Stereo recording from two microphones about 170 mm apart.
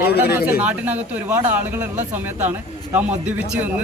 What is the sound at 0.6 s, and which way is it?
A man's voice, 10° right (ahead or behind).